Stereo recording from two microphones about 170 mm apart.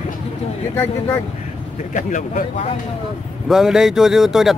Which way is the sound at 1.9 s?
45° left (ahead or behind).